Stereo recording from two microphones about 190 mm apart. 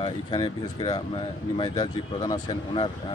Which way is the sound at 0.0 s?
25° left (ahead or behind).